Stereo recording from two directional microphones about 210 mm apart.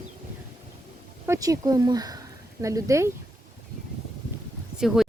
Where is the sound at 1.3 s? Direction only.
15° right (ahead or behind).